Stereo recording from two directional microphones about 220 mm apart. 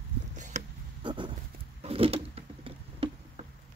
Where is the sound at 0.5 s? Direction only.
30° right (ahead or behind).